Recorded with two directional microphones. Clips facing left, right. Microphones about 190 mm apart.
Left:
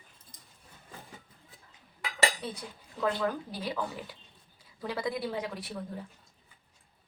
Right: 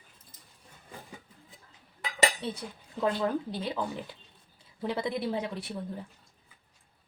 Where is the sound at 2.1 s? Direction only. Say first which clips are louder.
Right 2 dB; 20° right (ahead or behind).